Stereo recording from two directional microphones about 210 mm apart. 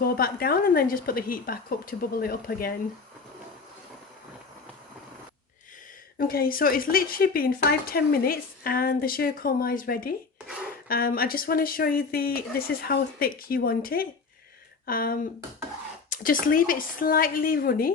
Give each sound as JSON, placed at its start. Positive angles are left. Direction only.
{"t": 0.0, "sound": "speech", "side_deg": 45}
{"t": 6.1, "sound": "speech", "side_deg": 45}
{"t": 16.2, "sound": "speech", "side_deg": 40}